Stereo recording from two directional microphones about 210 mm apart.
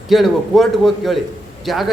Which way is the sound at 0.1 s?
Centre (ahead or behind).